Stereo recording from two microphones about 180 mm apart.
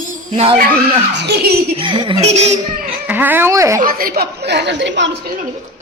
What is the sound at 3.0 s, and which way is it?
Speech, 10° right (ahead or behind).